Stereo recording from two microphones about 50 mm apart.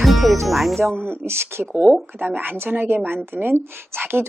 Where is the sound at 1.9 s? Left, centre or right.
Right.